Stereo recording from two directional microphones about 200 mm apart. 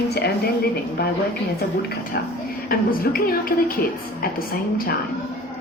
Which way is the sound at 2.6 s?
45° left (ahead or behind).